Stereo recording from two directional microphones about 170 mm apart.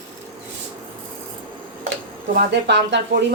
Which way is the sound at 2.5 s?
90° right.